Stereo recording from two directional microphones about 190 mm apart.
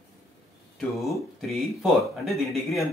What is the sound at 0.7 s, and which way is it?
Speech, centre (ahead or behind).